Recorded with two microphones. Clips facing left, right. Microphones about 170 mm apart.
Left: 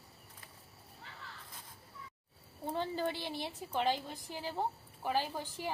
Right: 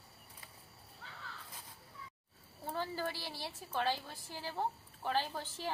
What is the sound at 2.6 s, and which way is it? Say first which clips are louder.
A woman's voice: left 3 dB; 20° left (ahead or behind).